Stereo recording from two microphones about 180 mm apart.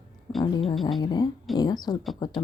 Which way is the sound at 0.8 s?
Centre (ahead or behind).